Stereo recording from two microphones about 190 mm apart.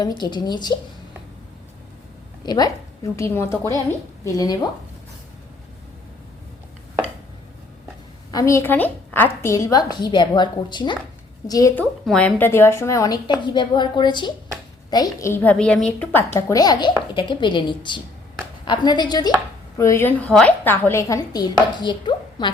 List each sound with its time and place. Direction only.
0.2 s a woman's voice: 20° left (ahead or behind)
2.5 s a woman's voice: 20° left (ahead or behind)
8.3 s a woman's voice: 15° left (ahead or behind)